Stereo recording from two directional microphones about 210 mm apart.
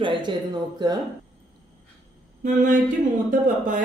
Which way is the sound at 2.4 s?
35° right (ahead or behind).